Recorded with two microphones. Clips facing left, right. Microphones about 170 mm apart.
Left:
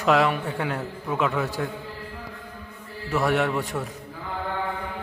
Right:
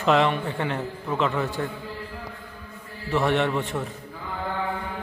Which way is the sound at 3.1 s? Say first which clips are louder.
Even; 5° left (ahead or behind).